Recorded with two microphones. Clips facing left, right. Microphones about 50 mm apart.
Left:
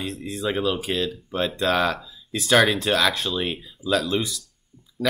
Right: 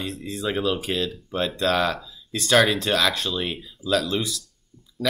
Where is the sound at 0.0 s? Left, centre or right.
Centre.